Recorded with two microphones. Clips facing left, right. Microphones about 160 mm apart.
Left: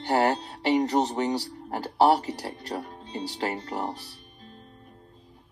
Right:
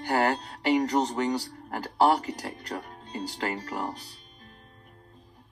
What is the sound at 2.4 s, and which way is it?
Speech, 25° left (ahead or behind).